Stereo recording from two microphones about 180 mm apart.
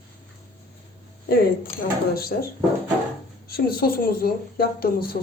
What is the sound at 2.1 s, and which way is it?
Speech, 60° left (ahead or behind).